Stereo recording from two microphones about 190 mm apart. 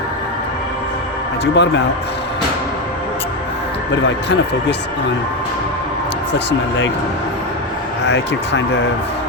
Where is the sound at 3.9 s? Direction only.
70° left (ahead or behind).